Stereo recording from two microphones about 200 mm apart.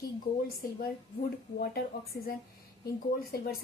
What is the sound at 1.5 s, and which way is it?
Speech, 50° left (ahead or behind).